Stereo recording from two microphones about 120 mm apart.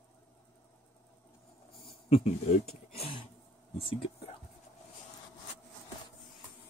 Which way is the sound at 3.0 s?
50° left (ahead or behind).